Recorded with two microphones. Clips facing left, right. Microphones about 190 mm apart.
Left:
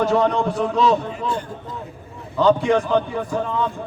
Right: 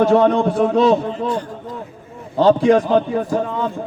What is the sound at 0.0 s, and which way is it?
Speech, 55° right (ahead or behind).